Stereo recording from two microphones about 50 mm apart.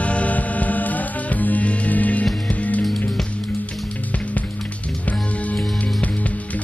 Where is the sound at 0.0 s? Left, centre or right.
Left.